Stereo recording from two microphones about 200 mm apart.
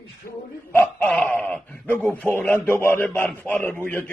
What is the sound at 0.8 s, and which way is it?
Speech, 5° left (ahead or behind).